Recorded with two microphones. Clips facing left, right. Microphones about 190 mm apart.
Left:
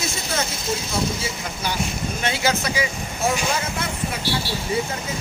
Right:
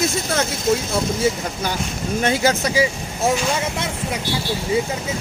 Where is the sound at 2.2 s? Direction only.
45° right (ahead or behind).